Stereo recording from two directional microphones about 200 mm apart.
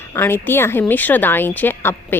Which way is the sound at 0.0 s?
10° left (ahead or behind).